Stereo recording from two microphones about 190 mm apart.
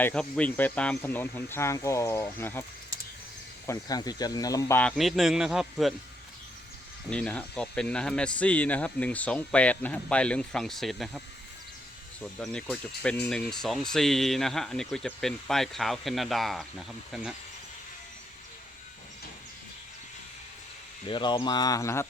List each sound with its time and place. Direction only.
0.0 s speech: 5° left (ahead or behind)
3.7 s speech: 20° left (ahead or behind)
4.8 s speech: centre (ahead or behind)
7.1 s speech: 5° left (ahead or behind)
12.2 s speech: 5° left (ahead or behind)
21.1 s speech: 25° left (ahead or behind)